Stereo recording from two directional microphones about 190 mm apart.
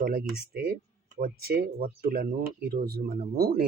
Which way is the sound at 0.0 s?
50° right (ahead or behind).